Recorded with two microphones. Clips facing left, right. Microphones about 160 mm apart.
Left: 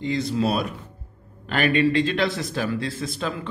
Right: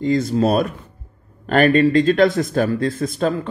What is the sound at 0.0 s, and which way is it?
Speech, 45° right (ahead or behind).